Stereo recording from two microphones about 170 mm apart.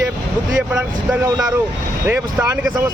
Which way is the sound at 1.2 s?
20° right (ahead or behind).